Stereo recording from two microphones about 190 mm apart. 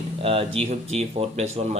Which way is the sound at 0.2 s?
30° right (ahead or behind).